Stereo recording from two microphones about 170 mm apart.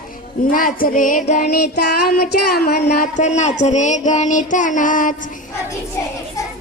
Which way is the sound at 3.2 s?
40° left (ahead or behind).